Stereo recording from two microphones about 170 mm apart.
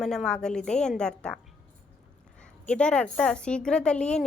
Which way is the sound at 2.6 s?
5° left (ahead or behind).